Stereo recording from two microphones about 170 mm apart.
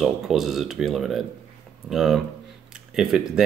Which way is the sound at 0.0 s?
Centre (ahead or behind).